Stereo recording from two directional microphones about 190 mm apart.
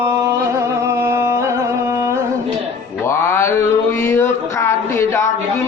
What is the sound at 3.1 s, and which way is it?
Mantra, 15° left (ahead or behind).